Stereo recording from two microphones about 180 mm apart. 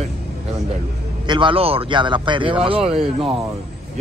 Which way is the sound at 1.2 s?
25° right (ahead or behind).